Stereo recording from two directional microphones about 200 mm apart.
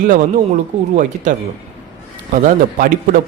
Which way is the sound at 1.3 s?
40° right (ahead or behind).